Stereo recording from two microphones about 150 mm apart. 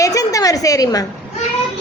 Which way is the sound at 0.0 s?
25° left (ahead or behind).